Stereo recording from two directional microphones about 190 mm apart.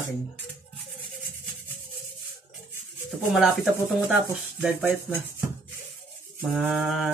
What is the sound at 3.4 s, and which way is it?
Speech, 5° right (ahead or behind).